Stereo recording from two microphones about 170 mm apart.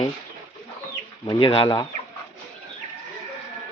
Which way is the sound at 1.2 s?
30° left (ahead or behind).